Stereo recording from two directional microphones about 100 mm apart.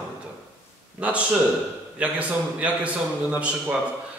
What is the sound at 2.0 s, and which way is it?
A man's voice, 15° right (ahead or behind).